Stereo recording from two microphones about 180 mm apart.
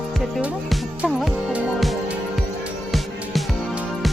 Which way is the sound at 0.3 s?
Centre (ahead or behind).